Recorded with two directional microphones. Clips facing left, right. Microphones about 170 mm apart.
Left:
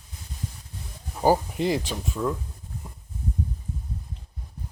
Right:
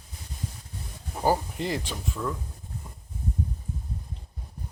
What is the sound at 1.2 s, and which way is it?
Speech, 15° left (ahead or behind).